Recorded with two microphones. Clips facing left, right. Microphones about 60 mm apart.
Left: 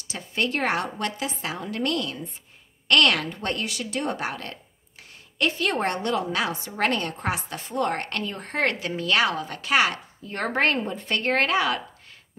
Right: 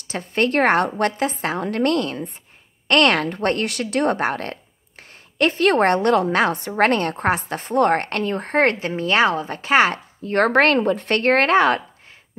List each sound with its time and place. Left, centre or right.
0.0 s a woman's voice: right
3.3 s speech: right
10.2 s speech: right